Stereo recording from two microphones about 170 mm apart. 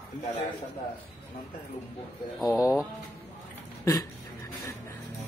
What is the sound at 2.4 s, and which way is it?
Speech, centre (ahead or behind).